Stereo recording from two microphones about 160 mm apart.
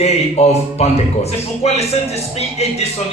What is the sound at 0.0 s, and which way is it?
A man's voice, 40° left (ahead or behind).